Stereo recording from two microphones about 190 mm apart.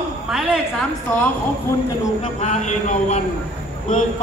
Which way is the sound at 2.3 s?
40° left (ahead or behind).